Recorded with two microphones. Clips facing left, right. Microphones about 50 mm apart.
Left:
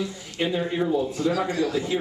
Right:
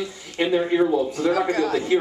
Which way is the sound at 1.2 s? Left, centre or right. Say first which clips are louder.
Right 3 dB; right.